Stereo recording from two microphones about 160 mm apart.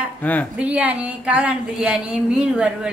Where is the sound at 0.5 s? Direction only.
10° right (ahead or behind).